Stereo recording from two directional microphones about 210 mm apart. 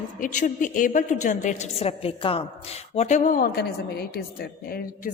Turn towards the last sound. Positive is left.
turn(degrees=45)  # may be behind; listen again after turning